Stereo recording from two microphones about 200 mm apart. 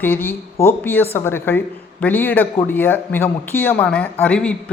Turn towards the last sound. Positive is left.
turn(degrees=5)  # may be behind; listen again after turning